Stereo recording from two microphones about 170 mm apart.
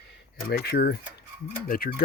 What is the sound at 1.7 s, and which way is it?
Speech, 60° left (ahead or behind).